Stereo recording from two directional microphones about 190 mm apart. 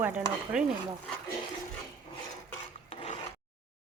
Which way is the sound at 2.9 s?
35° left (ahead or behind).